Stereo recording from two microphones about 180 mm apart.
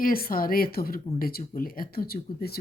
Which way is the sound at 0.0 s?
55° left (ahead or behind).